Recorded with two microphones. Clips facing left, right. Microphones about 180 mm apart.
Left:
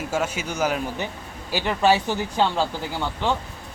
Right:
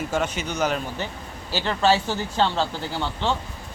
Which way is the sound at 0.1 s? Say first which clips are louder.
Even; 5° left (ahead or behind).